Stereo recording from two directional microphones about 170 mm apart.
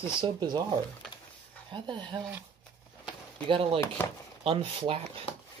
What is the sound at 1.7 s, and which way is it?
Speech, 25° right (ahead or behind).